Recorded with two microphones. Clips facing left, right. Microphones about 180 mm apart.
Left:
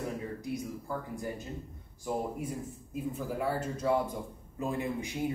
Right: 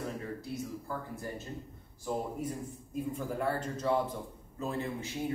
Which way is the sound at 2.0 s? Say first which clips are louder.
Left 1 dB; 5° left (ahead or behind).